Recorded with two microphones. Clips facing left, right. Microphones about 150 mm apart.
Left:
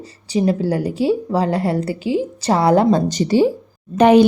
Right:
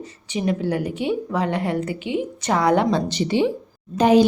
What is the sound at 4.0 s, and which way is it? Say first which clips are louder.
Speech: left 4 dB; 65° left (ahead or behind).